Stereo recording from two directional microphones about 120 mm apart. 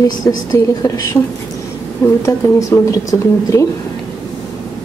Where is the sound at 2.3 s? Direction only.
25° left (ahead or behind).